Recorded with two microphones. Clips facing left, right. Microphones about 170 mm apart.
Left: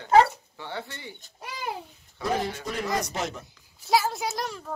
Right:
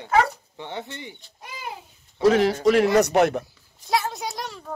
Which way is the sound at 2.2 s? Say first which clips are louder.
Right 11 dB; 90° right.